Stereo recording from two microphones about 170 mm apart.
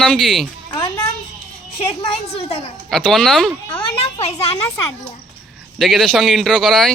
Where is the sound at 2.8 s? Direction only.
5° left (ahead or behind).